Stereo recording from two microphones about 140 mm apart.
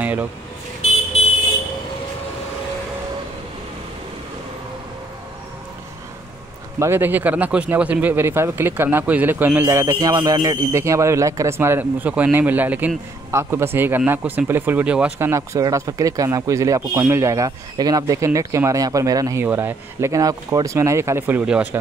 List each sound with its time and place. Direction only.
0.0 s vehicle: 10° right (ahead or behind)
6.8 s speech: 15° right (ahead or behind)